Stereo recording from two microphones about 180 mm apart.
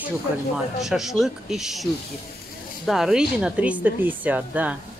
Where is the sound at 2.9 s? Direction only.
5° right (ahead or behind).